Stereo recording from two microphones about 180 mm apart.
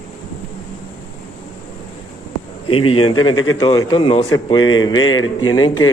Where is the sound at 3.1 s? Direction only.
25° left (ahead or behind).